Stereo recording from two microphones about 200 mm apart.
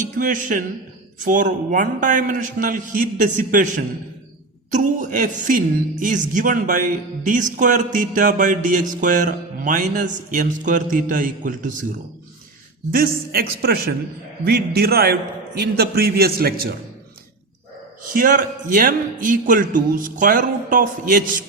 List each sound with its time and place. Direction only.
0.0 s a man's voice: 40° right (ahead or behind)
12.9 s a man's voice: 50° right (ahead or behind)
18.0 s a man's voice: 45° right (ahead or behind)